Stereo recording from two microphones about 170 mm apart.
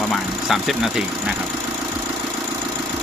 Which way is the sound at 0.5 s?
Centre (ahead or behind).